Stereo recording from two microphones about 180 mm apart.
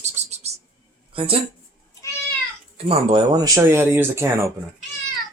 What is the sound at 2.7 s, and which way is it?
Speech, 35° right (ahead or behind).